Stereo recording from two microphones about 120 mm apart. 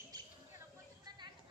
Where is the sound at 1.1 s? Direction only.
35° right (ahead or behind).